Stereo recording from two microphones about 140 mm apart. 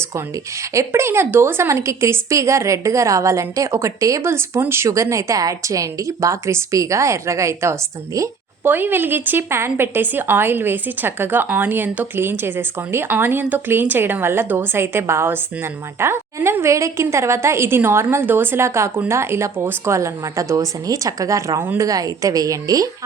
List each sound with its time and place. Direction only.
0.7 s a woman's voice: 20° right (ahead or behind)